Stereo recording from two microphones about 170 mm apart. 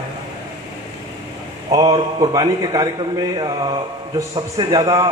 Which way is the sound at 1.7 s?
25° right (ahead or behind).